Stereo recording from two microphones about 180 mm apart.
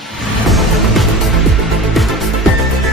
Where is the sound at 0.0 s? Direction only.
Centre (ahead or behind).